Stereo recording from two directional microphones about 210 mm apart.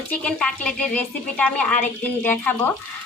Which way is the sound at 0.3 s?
5° left (ahead or behind).